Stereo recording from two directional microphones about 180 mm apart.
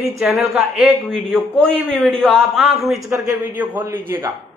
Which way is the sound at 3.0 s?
15° right (ahead or behind).